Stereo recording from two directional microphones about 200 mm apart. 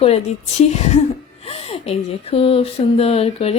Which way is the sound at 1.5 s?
30° left (ahead or behind).